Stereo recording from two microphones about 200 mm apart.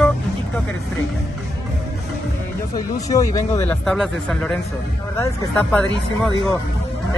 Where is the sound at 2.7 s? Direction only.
15° left (ahead or behind).